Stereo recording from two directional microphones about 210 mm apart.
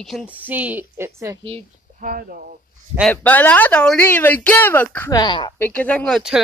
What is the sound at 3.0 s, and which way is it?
Speech, 5° left (ahead or behind).